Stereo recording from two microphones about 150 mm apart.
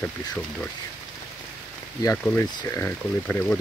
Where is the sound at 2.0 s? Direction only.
20° left (ahead or behind).